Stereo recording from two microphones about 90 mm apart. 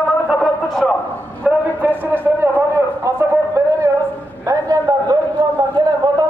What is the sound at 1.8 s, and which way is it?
A man's voice, 25° right (ahead or behind).